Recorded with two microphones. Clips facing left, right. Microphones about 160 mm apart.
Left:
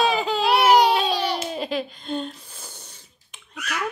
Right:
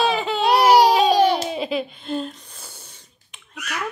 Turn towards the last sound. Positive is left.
turn(degrees=0)  # may be behind; listen again after turning